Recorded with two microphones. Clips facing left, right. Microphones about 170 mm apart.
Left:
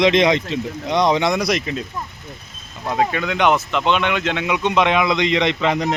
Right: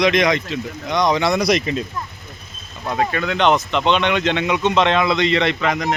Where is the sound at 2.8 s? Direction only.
15° left (ahead or behind).